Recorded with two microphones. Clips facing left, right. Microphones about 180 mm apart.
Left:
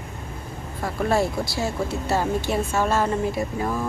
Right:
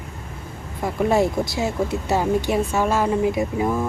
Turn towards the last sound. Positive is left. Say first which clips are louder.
# right 4 dB
turn(degrees=-15)  # may be behind; listen again after turning